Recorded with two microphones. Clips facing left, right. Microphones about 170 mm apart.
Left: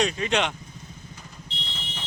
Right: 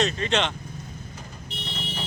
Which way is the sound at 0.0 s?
10° left (ahead or behind).